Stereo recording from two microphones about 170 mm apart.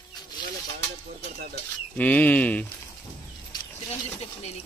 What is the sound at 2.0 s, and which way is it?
Speech, 10° left (ahead or behind).